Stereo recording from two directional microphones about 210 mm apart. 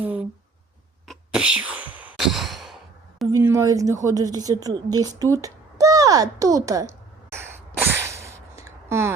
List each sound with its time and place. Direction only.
0.0 s speech: 10° right (ahead or behind)
1.0 s sigh: centre (ahead or behind)
3.3 s a woman's voice: 15° right (ahead or behind)
7.8 s a sound: 10° right (ahead or behind)